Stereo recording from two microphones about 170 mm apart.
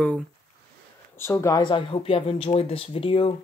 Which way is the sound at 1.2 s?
15° left (ahead or behind).